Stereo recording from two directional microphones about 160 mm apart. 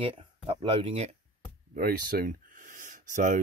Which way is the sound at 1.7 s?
70° right (ahead or behind).